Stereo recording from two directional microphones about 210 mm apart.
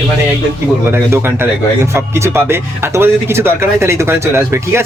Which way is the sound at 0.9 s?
10° right (ahead or behind).